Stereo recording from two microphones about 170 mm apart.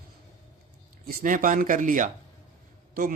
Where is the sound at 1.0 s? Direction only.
55° right (ahead or behind).